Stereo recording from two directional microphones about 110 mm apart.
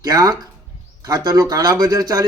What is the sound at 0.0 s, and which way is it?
A man's voice, 35° right (ahead or behind).